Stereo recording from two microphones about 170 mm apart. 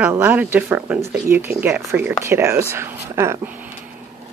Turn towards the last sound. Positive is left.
turn(degrees=-15)  # may be behind; listen again after turning